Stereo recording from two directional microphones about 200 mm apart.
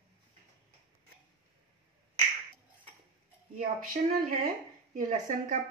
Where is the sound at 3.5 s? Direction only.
45° right (ahead or behind).